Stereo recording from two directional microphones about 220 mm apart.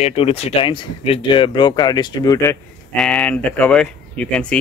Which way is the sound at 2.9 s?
5° left (ahead or behind).